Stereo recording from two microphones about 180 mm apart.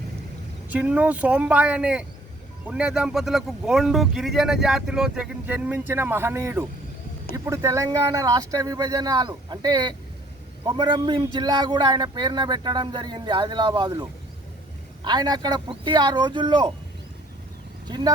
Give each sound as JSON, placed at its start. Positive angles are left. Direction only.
{"t": 0.7, "sound": "speech", "side_deg": -10}
{"t": 17.8, "sound": "speech", "side_deg": -25}